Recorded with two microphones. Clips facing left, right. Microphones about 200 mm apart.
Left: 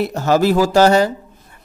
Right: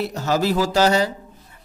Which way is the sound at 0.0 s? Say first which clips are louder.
Left 6 dB; 55° left (ahead or behind).